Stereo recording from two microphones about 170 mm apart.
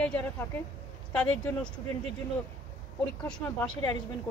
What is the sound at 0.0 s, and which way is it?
Speech, 10° left (ahead or behind).